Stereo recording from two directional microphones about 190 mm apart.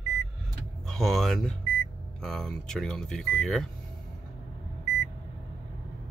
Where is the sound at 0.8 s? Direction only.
Centre (ahead or behind).